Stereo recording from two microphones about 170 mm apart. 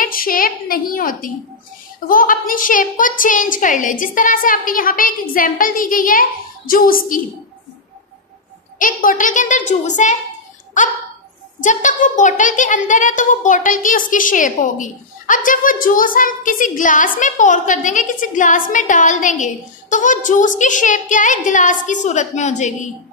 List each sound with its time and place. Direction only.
0.0 s a woman's voice: 55° left (ahead or behind)
8.7 s a child's voice: 55° left (ahead or behind)
11.6 s a child's voice: 45° left (ahead or behind)